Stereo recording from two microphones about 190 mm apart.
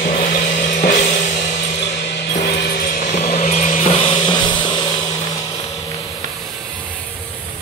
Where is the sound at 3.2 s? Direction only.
35° left (ahead or behind).